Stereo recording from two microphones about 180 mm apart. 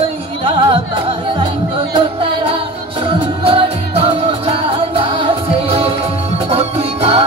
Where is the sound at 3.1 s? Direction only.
30° right (ahead or behind).